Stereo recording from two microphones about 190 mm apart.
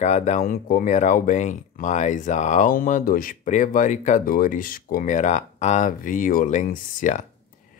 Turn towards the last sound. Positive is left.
turn(degrees=40)  # may be behind; listen again after turning